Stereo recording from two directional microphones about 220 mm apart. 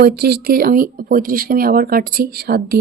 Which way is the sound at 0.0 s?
45° right (ahead or behind).